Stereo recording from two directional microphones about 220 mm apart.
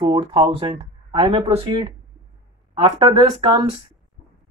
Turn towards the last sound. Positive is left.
turn(degrees=-25)  # may be behind; listen again after turning